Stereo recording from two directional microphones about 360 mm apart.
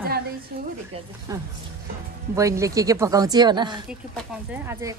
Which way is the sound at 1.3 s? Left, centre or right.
Centre.